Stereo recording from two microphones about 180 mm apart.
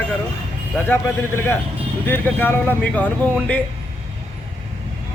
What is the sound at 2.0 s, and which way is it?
A man's voice, 10° left (ahead or behind).